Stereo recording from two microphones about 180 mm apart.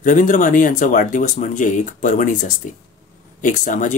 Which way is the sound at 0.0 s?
45° left (ahead or behind).